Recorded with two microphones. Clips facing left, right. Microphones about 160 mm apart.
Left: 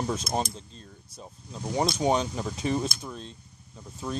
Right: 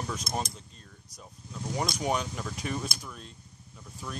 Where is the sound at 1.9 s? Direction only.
25° left (ahead or behind).